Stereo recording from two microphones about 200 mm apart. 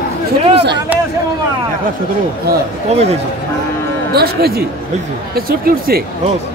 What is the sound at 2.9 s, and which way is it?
Speech, 30° right (ahead or behind).